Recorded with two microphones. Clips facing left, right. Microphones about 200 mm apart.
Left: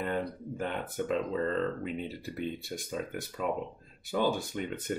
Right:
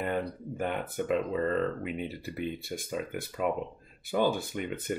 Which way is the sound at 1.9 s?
5° right (ahead or behind).